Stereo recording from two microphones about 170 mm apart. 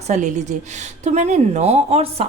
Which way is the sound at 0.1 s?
45° right (ahead or behind).